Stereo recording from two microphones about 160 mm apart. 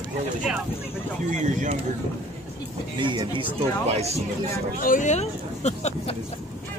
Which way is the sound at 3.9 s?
40° right (ahead or behind).